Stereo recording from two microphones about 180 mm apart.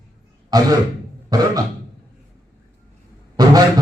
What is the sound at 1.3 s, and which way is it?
Throat clearing, 20° right (ahead or behind).